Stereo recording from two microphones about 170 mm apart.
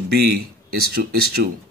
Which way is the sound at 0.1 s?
65° right (ahead or behind).